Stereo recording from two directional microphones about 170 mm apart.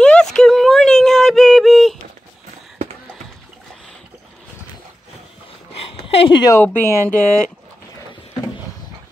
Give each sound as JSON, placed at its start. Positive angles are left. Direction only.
{"t": 0.0, "sound": "a sound", "side_deg": 5}
{"t": 6.0, "sound": "speech", "side_deg": 30}
{"t": 6.6, "sound": "speech", "side_deg": 10}